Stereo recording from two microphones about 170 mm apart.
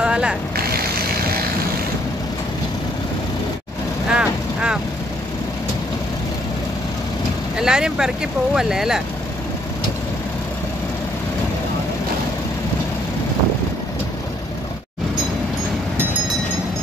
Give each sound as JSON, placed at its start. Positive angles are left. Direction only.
{"t": 0.0, "sound": "vehicle", "side_deg": -5}
{"t": 0.6, "sound": "vehicle", "side_deg": -65}
{"t": 4.1, "sound": "vehicle", "side_deg": -5}
{"t": 7.5, "sound": "speech", "side_deg": -5}